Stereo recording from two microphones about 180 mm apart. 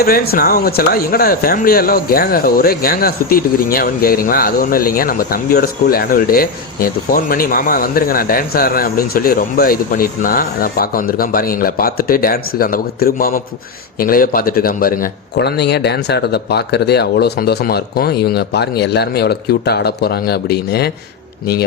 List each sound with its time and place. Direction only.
0.0 s speech: 60° left (ahead or behind)